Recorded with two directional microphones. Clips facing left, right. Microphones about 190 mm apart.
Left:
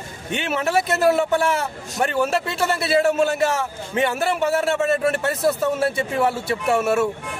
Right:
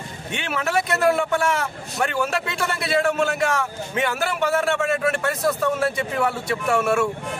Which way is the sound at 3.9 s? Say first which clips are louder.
Left 3 dB; 30° left (ahead or behind).